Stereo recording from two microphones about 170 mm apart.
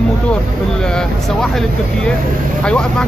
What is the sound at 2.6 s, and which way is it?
Speech, 5° left (ahead or behind).